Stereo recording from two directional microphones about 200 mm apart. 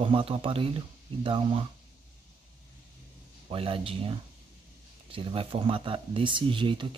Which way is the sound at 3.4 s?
25° right (ahead or behind).